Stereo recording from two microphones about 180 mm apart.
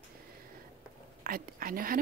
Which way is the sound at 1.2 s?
50° right (ahead or behind).